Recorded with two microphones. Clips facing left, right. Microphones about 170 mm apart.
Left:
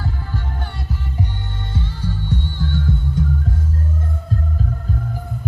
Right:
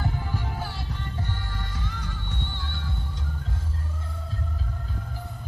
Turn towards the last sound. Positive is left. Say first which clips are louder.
# left 14 dB
turn(degrees=45)  # may be behind; listen again after turning